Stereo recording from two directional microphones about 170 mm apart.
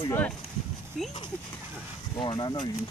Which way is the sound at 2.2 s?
30° left (ahead or behind).